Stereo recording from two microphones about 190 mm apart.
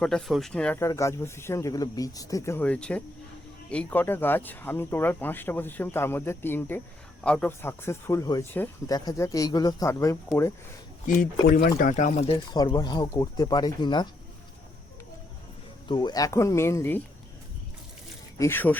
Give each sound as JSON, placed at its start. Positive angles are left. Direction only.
{"t": 0.0, "sound": "speech", "side_deg": 5}
{"t": 11.0, "sound": "speech", "side_deg": 45}
{"t": 12.5, "sound": "speech", "side_deg": 20}
{"t": 15.9, "sound": "speech", "side_deg": 20}
{"t": 18.3, "sound": "speech", "side_deg": 10}